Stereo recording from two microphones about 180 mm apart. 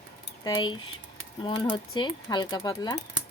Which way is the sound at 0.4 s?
25° left (ahead or behind).